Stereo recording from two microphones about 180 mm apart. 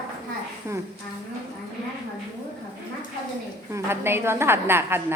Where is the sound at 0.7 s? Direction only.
15° right (ahead or behind).